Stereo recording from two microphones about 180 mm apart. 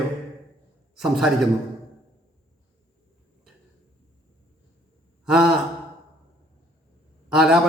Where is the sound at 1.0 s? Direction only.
Centre (ahead or behind).